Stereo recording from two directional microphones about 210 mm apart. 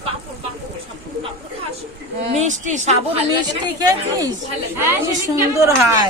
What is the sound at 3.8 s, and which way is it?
Speech, 15° right (ahead or behind).